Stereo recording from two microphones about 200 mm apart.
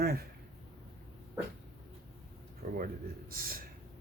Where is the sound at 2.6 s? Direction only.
50° right (ahead or behind).